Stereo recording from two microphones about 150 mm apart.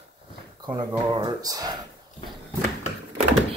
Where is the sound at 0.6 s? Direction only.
25° right (ahead or behind).